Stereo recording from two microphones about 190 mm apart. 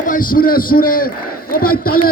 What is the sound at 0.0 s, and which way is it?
A man's voice, 45° left (ahead or behind).